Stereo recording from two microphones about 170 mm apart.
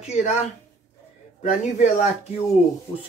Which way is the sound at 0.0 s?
40° left (ahead or behind).